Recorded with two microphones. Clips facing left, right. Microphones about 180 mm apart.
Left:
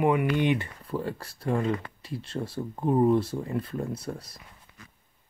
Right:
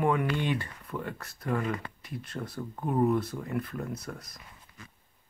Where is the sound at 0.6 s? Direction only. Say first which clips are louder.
Left 5 dB; 30° left (ahead or behind).